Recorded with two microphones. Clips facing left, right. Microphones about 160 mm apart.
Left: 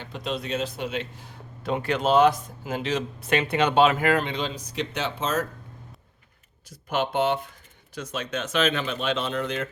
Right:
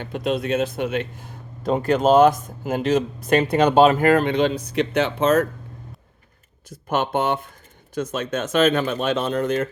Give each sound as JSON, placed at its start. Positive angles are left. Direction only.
{"t": 0.0, "sound": "speech", "side_deg": -55}
{"t": 6.7, "sound": "speech", "side_deg": -50}